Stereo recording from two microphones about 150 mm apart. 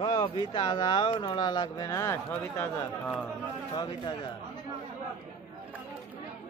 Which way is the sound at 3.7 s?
30° left (ahead or behind).